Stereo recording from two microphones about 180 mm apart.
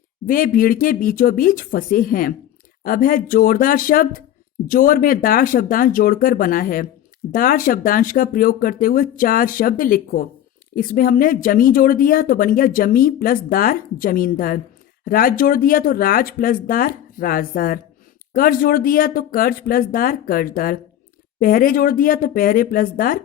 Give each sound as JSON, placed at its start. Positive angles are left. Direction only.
{"t": 0.3, "sound": "speech", "side_deg": 50}